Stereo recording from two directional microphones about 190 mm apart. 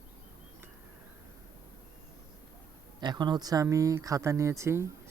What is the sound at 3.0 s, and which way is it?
Speech, 25° right (ahead or behind).